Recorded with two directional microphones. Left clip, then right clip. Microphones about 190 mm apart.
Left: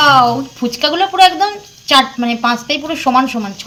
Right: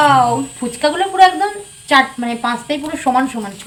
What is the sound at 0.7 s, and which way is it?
A woman's voice, 25° left (ahead or behind).